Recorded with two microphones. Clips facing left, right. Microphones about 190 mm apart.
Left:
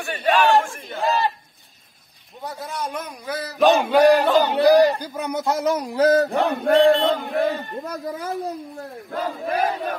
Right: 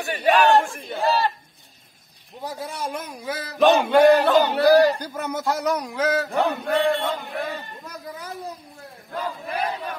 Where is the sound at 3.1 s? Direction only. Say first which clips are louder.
Left 1 dB; 5° right (ahead or behind); by 6.4 s 35° left (ahead or behind).